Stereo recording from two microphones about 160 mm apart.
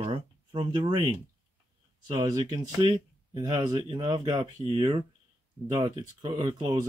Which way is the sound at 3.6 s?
30° right (ahead or behind).